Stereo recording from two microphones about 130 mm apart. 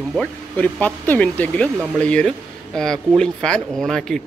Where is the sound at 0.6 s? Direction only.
15° left (ahead or behind).